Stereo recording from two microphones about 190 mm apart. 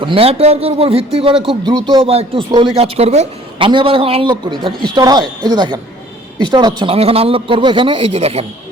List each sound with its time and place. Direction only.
0.0 s a man's voice: 30° right (ahead or behind)